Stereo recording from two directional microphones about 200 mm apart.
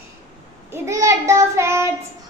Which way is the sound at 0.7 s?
15° right (ahead or behind).